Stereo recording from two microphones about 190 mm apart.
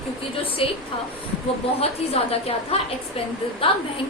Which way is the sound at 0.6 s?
30° left (ahead or behind).